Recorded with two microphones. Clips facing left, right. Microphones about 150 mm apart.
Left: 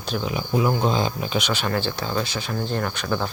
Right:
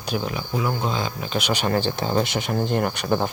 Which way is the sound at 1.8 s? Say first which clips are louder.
Right 3 dB; 20° right (ahead or behind).